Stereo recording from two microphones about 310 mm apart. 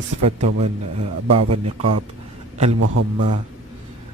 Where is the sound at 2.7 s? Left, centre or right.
Right.